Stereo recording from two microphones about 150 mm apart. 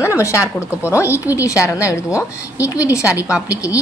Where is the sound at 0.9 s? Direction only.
20° left (ahead or behind).